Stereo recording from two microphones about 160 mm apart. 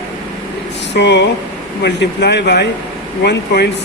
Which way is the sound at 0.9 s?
90° left.